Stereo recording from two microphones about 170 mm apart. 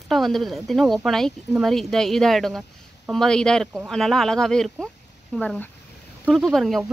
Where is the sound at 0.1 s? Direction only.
Centre (ahead or behind).